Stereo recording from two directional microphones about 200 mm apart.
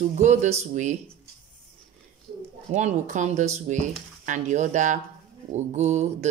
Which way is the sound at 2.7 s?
35° right (ahead or behind).